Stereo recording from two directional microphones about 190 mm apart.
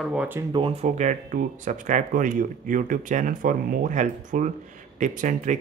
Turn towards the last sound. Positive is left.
turn(degrees=-40)  # may be behind; listen again after turning